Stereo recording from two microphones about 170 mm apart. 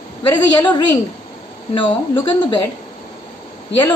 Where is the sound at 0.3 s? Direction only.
25° left (ahead or behind).